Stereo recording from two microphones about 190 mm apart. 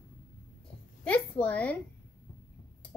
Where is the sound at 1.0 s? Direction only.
5° left (ahead or behind).